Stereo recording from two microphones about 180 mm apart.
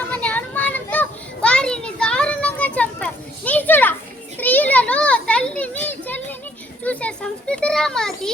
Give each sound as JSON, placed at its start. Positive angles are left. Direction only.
{"t": 0.0, "sound": "children playing", "side_deg": 10}